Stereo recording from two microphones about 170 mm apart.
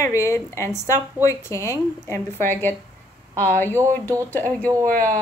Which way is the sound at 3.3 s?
10° left (ahead or behind).